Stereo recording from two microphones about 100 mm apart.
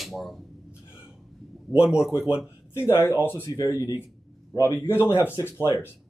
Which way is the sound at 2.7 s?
25° left (ahead or behind).